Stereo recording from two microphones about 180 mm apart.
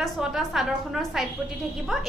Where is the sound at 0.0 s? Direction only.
Centre (ahead or behind).